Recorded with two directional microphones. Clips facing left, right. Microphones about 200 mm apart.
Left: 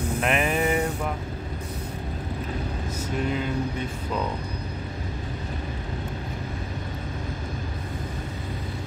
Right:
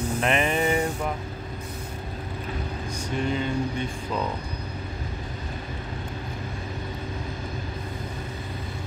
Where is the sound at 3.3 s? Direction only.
5° left (ahead or behind).